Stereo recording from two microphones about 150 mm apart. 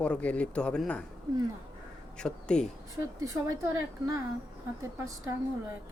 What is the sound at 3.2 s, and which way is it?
Speech, 20° right (ahead or behind).